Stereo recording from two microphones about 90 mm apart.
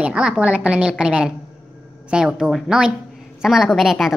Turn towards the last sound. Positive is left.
turn(degrees=0)  # may be behind; listen again after turning